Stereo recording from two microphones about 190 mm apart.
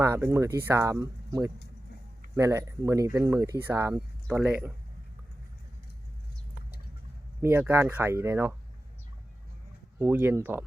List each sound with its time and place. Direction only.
0.0 s speech: 15° right (ahead or behind)
7.4 s speech: 15° right (ahead or behind)
10.0 s speech: 10° right (ahead or behind)